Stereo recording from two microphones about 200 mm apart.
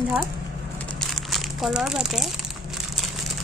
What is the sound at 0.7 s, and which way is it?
Crumpling, centre (ahead or behind).